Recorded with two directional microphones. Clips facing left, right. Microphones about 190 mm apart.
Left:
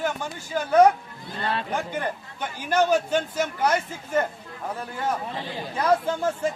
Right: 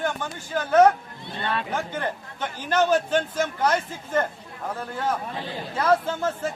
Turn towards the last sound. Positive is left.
turn(degrees=15)  # may be behind; listen again after turning